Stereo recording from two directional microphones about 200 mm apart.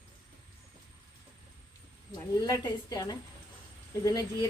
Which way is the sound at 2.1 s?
20° left (ahead or behind).